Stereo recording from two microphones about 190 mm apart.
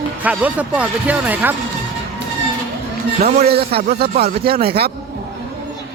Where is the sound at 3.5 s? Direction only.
55° right (ahead or behind).